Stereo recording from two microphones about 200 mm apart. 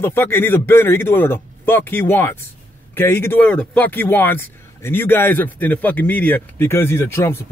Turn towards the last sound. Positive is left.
turn(degrees=10)  # may be behind; listen again after turning